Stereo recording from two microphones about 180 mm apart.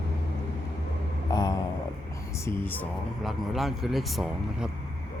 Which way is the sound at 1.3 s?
20° left (ahead or behind).